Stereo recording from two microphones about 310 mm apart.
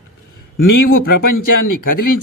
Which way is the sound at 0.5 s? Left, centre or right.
Left.